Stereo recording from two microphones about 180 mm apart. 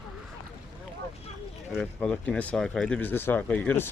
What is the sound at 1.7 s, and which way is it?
Speech, 5° left (ahead or behind).